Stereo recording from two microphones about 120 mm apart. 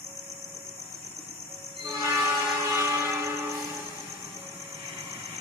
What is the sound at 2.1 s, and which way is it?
Train, 25° right (ahead or behind).